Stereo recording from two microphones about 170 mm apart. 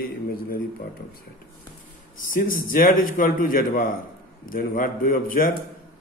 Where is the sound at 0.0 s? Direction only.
60° left (ahead or behind).